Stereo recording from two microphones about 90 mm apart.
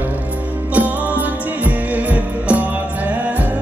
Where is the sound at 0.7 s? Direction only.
15° right (ahead or behind).